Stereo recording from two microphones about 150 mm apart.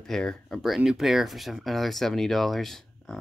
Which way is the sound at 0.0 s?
5° left (ahead or behind).